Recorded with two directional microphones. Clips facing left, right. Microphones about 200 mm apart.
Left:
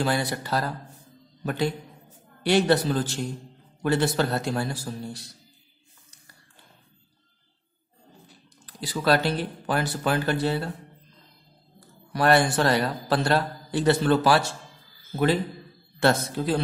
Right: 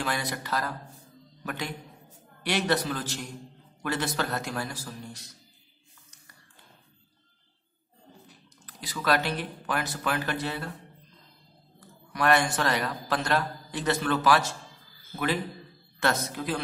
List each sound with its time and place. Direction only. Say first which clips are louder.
0.0 s a man's voice: left 6 dB; 30° left (ahead or behind)
8.6 s speech: left 5 dB; 30° left (ahead or behind)
11.8 s a man's voice: left 4 dB; 30° left (ahead or behind)